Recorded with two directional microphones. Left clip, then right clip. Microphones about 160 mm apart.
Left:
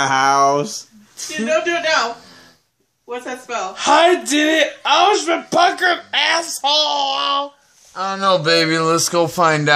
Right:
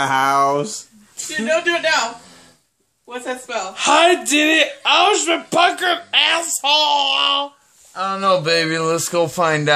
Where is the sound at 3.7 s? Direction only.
10° right (ahead or behind).